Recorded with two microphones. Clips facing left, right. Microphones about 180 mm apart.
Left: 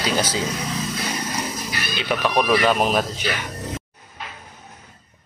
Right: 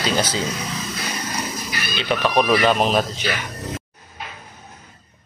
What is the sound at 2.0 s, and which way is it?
Speech, 5° left (ahead or behind).